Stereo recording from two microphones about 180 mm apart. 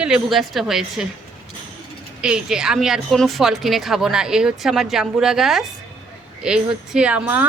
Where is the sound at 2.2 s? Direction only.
5° right (ahead or behind).